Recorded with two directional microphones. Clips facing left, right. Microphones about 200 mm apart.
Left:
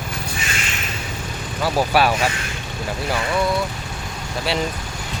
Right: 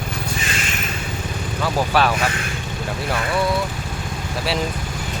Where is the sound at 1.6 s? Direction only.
10° left (ahead or behind).